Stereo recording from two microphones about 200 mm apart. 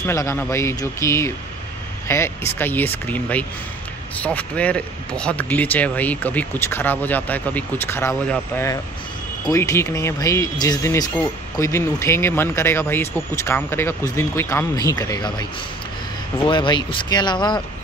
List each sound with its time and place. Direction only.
0.0 s speech: 15° left (ahead or behind)
16.4 s speech: 25° left (ahead or behind)